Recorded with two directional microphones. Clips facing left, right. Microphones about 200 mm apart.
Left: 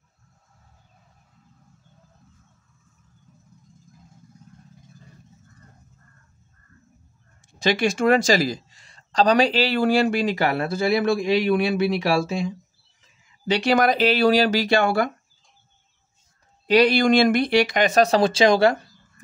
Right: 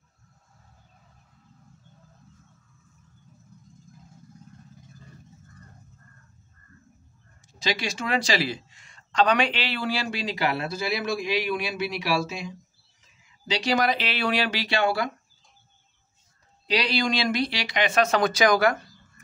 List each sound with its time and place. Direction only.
7.4 s speech: 55° left (ahead or behind)
16.6 s speech: 50° left (ahead or behind); by 19.2 s 30° left (ahead or behind)